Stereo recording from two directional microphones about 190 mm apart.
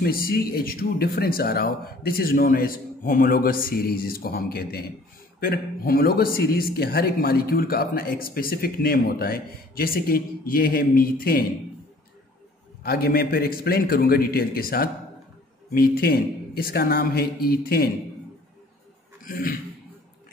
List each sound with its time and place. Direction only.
0.0 s speech: 50° left (ahead or behind)
12.8 s speech: 55° left (ahead or behind)
19.2 s speech: 50° left (ahead or behind)